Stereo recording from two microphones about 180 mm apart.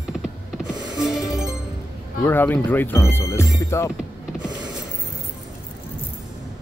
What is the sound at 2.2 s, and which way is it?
Speech, 10° left (ahead or behind).